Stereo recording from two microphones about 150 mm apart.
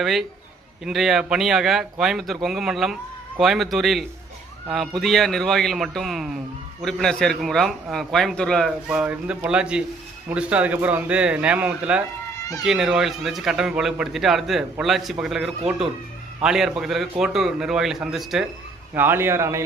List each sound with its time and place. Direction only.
0.0 s speech: centre (ahead or behind)
8.9 s a man's voice: 10° right (ahead or behind)
18.9 s a man's voice: 15° right (ahead or behind)